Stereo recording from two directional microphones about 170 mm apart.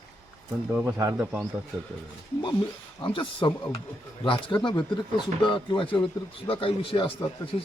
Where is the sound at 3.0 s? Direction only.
30° left (ahead or behind).